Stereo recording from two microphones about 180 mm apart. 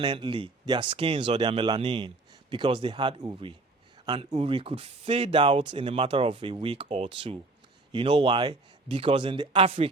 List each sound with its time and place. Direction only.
0.0 s speech: 25° right (ahead or behind)